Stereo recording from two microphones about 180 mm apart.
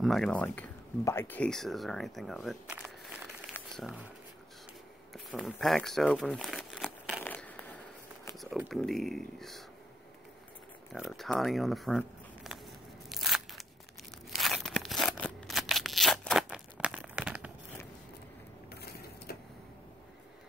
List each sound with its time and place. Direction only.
0.0 s speech: centre (ahead or behind)
5.1 s speech: centre (ahead or behind)
7.2 s a sound: 10° left (ahead or behind)
8.4 s speech: centre (ahead or behind)
10.9 s speech: centre (ahead or behind)
13.1 s crunch: centre (ahead or behind)
14.3 s a sound: centre (ahead or behind)
18.7 s printer: 60° left (ahead or behind)